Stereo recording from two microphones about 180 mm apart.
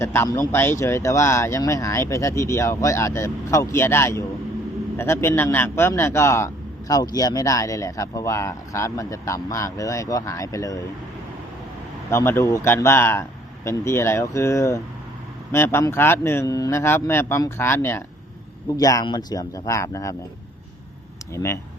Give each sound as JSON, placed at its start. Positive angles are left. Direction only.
{"t": 0.0, "sound": "a man's voice", "side_deg": 15}
{"t": 12.1, "sound": "a man's voice", "side_deg": 15}
{"t": 21.3, "sound": "a man's voice", "side_deg": 15}